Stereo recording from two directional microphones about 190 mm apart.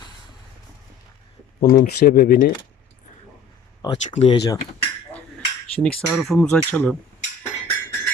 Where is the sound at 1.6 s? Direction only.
45° left (ahead or behind).